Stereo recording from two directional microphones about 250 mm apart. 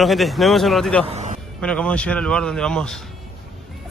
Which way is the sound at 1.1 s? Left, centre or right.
Right.